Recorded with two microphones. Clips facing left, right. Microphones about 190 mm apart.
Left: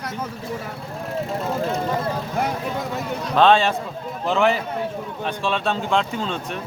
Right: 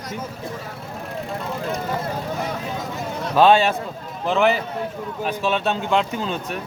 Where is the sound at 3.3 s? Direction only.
10° right (ahead or behind).